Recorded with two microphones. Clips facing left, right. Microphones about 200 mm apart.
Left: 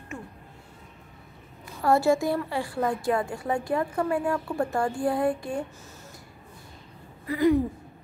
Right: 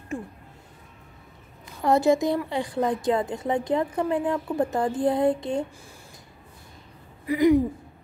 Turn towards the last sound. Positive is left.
turn(degrees=-15)  # may be behind; listen again after turning